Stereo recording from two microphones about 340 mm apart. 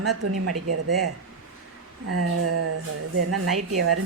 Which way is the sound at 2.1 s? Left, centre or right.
Right.